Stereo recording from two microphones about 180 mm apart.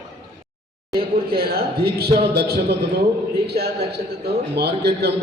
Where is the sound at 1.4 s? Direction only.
60° right (ahead or behind).